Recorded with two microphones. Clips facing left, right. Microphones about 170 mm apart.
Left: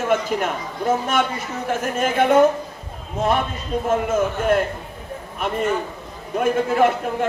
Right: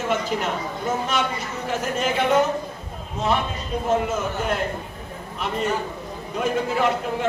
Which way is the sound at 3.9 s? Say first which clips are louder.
Left 3 dB; 50° left (ahead or behind).